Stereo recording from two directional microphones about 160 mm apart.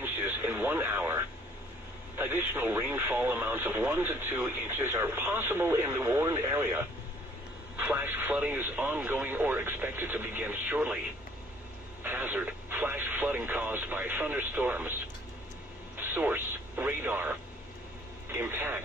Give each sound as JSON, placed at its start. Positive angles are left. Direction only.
{"t": 0.0, "sound": "radio", "side_deg": -15}
{"t": 2.1, "sound": "speech", "side_deg": -15}
{"t": 16.1, "sound": "speech", "side_deg": -10}